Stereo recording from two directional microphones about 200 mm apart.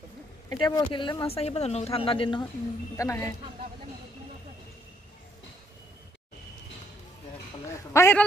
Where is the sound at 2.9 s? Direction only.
15° left (ahead or behind).